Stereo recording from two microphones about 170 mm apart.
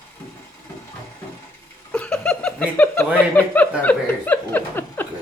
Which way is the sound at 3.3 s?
10° left (ahead or behind).